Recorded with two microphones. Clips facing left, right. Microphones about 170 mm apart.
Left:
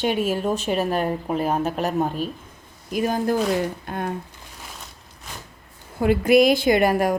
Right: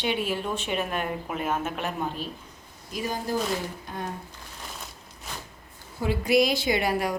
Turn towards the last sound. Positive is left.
turn(degrees=50)  # may be behind; listen again after turning